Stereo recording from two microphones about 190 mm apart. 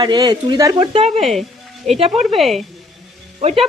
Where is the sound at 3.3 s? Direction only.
30° right (ahead or behind).